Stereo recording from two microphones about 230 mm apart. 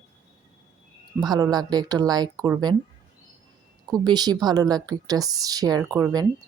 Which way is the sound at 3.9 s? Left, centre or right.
Centre.